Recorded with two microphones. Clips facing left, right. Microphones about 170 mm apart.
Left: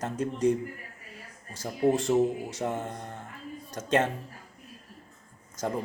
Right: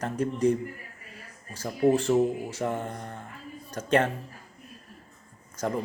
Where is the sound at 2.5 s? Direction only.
20° left (ahead or behind).